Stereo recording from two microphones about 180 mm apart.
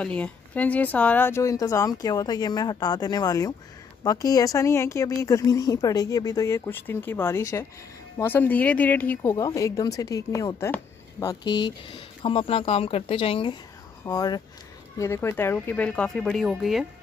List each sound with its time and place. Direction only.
0.0 s speech: 5° left (ahead or behind)